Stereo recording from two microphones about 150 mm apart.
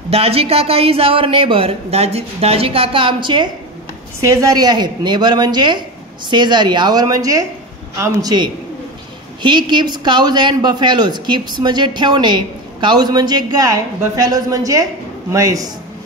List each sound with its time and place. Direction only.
0.1 s speech: 40° right (ahead or behind); by 15.7 s 20° right (ahead or behind)